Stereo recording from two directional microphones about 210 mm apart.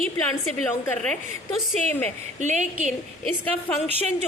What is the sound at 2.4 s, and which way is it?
Speech, 35° right (ahead or behind).